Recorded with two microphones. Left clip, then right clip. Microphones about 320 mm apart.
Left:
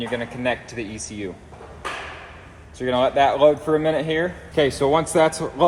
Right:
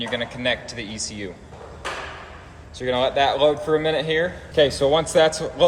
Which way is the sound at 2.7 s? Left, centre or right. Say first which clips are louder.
Left 2 dB; centre.